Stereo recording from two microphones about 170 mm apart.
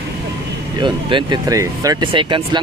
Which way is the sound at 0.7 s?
25° right (ahead or behind).